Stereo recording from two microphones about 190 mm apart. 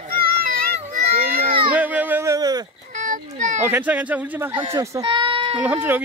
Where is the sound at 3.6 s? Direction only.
10° right (ahead or behind).